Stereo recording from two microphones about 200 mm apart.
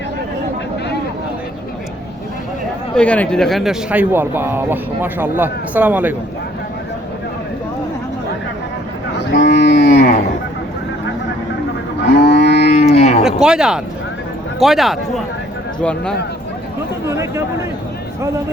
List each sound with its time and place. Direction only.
2.9 s speech: 5° left (ahead or behind)
9.1 s speech: 60° left (ahead or behind)
12.1 s livestock: 60° left (ahead or behind)
12.7 s cattle: 35° left (ahead or behind)
13.2 s speech: 5° right (ahead or behind)
17.1 s speech: 15° right (ahead or behind)